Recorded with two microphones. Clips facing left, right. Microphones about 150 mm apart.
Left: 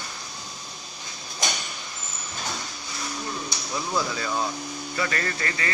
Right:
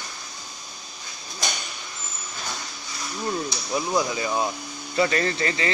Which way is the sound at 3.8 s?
15° right (ahead or behind).